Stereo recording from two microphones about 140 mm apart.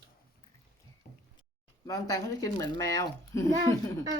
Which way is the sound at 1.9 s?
25° left (ahead or behind).